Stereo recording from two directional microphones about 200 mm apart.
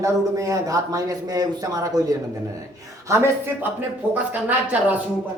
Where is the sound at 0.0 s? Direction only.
15° right (ahead or behind).